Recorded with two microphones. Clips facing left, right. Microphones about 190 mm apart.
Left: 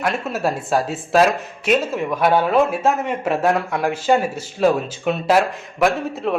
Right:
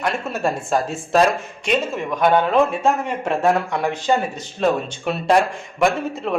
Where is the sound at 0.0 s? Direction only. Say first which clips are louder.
Left 1 dB; centre (ahead or behind).